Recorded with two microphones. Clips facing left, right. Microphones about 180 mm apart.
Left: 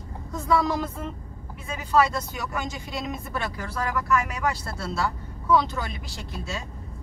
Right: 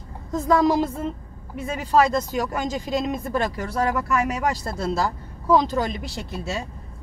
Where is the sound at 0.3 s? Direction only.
35° right (ahead or behind).